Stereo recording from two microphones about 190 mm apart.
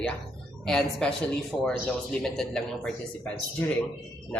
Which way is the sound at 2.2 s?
5° left (ahead or behind).